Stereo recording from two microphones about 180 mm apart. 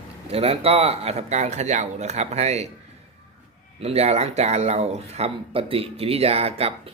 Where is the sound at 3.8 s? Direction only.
35° right (ahead or behind).